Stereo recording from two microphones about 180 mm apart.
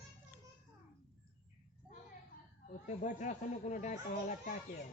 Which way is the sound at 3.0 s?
45° left (ahead or behind).